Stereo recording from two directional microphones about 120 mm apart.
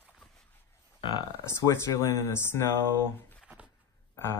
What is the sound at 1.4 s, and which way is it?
A man's voice, 25° left (ahead or behind).